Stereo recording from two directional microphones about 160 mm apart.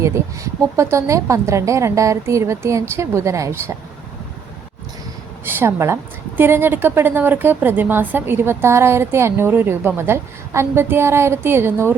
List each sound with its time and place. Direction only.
0.0 s a woman's voice: 20° right (ahead or behind)
5.5 s a woman's voice: 15° right (ahead or behind)